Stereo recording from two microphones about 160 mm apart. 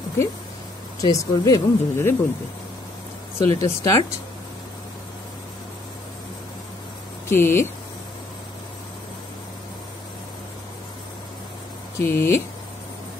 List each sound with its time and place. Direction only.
1.0 s speech: 25° left (ahead or behind)
3.3 s speech: 20° left (ahead or behind)
7.2 s speech: 15° left (ahead or behind)
12.0 s speech: 15° left (ahead or behind)